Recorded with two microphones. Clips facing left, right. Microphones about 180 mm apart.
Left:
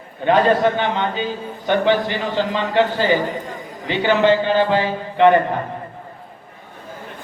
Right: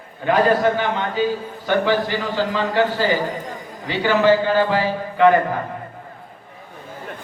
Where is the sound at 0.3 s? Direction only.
25° left (ahead or behind).